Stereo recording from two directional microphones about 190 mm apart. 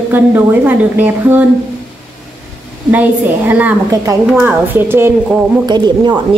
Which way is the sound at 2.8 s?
10° right (ahead or behind).